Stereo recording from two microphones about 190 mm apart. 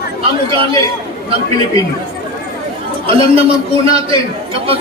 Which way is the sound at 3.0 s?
30° right (ahead or behind).